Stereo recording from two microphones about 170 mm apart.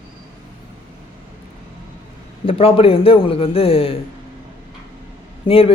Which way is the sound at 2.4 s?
35° left (ahead or behind).